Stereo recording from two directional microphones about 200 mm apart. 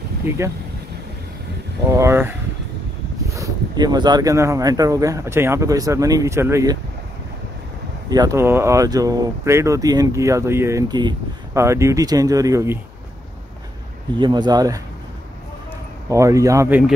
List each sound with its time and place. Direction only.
0.3 s speech: 10° right (ahead or behind)
1.9 s speech: 15° right (ahead or behind)
8.1 s speech: 20° right (ahead or behind)
14.1 s speech: 20° right (ahead or behind)
16.1 s speech: 15° right (ahead or behind)